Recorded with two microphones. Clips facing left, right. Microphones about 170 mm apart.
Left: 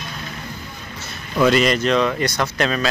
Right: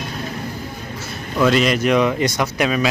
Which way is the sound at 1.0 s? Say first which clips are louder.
Even; centre (ahead or behind).